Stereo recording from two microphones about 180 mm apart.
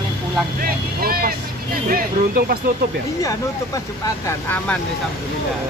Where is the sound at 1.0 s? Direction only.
55° right (ahead or behind).